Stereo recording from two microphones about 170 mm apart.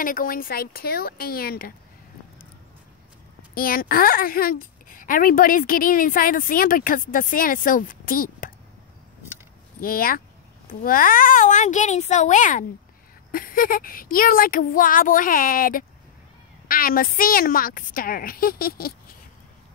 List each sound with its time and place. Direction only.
0.0 s a woman's voice: 55° left (ahead or behind)
3.5 s a woman's voice: 60° left (ahead or behind)
9.8 s a woman's voice: 60° left (ahead or behind)